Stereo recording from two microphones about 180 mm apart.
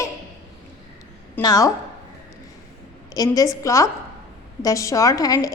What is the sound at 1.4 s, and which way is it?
Speech, 20° left (ahead or behind).